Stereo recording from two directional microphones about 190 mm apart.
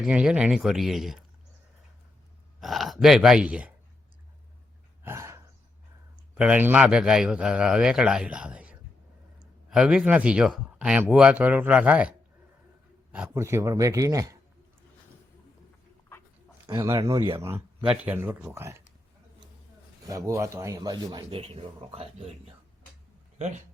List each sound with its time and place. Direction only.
0.0 s a man's voice: 5° right (ahead or behind)
2.6 s a man's voice: centre (ahead or behind)
5.0 s a sound: 15° right (ahead or behind)
6.3 s a man's voice: 5° right (ahead or behind)
16.6 s a man's voice: 15° right (ahead or behind)
17.4 s a man's voice: 10° right (ahead or behind)
20.1 s a man's voice: 15° right (ahead or behind); by 23.6 s 40° right (ahead or behind)